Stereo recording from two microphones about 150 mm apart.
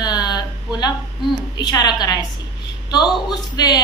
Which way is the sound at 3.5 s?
25° left (ahead or behind).